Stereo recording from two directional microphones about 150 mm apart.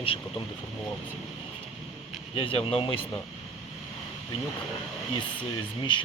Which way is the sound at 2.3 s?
35° left (ahead or behind).